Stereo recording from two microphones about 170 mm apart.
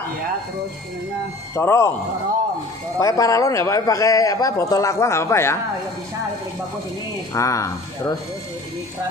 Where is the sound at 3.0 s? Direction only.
20° left (ahead or behind).